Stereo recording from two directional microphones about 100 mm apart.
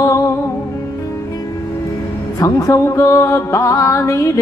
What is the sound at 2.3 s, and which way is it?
Music, 35° left (ahead or behind).